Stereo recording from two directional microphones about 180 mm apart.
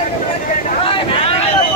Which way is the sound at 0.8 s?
30° left (ahead or behind).